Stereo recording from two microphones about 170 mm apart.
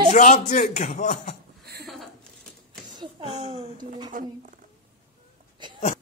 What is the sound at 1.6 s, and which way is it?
Chuckle, 70° right (ahead or behind).